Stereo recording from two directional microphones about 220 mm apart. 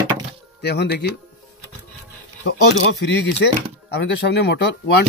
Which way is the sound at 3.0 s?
50° left (ahead or behind).